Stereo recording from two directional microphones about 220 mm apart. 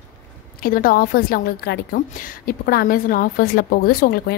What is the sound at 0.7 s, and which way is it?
A woman's voice, 40° left (ahead or behind).